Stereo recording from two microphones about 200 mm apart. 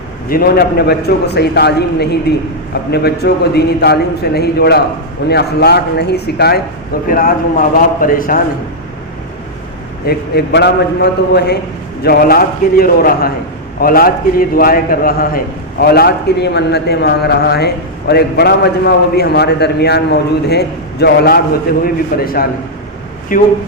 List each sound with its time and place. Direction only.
0.3 s a man's voice: 50° left (ahead or behind)
10.1 s a man's voice: 55° left (ahead or behind)